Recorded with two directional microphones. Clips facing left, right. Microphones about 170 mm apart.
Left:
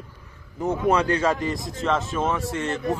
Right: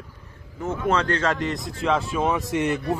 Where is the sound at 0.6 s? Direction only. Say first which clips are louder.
Left 2 dB; 15° left (ahead or behind).